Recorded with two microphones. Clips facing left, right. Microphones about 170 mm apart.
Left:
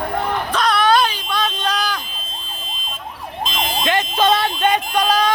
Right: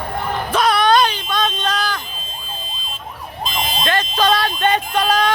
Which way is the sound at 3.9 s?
20° left (ahead or behind).